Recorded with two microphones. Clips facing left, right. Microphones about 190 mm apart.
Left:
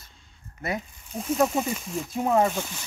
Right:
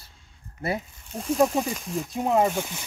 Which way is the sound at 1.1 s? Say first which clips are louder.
Right 2 dB; centre (ahead or behind).